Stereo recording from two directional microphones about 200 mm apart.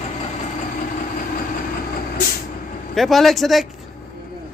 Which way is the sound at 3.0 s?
Centre (ahead or behind).